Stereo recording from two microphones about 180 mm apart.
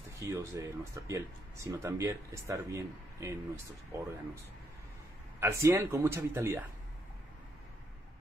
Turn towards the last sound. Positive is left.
turn(degrees=-15)  # may be behind; listen again after turning